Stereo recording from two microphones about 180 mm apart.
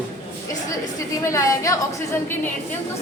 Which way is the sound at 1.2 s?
15° left (ahead or behind).